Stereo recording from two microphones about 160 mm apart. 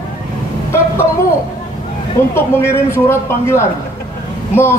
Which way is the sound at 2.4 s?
15° left (ahead or behind).